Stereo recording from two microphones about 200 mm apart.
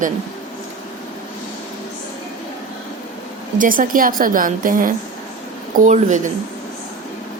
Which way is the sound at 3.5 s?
40° right (ahead or behind).